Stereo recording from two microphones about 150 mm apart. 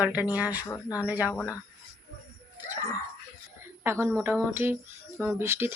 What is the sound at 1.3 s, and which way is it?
Speech, 15° left (ahead or behind).